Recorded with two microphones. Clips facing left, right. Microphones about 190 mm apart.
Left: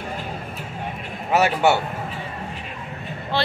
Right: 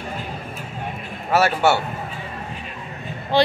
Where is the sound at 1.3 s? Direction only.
15° left (ahead or behind).